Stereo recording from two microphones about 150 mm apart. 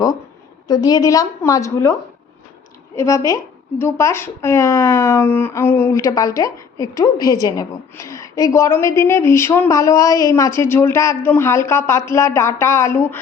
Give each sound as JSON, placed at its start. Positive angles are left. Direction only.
{"t": 0.7, "sound": "a woman's voice", "side_deg": 25}